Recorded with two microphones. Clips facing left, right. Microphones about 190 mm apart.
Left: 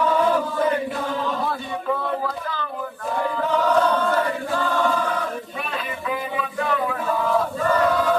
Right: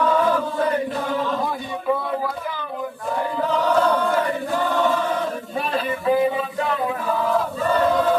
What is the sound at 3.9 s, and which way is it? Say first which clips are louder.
Chant: right 1 dB; 15° right (ahead or behind).